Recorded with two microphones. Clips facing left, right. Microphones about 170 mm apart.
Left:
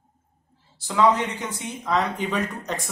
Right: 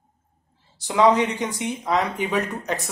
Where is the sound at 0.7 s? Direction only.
20° right (ahead or behind).